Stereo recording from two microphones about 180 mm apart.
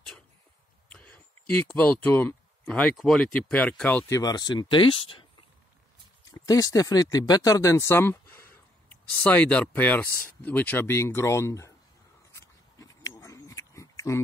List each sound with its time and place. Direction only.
0.8 s a sound: 5° left (ahead or behind)
3.3 s speech: 10° left (ahead or behind)
4.2 s speech: 20° left (ahead or behind)
6.3 s speech: 20° left (ahead or behind)
12.3 s pig: 15° left (ahead or behind)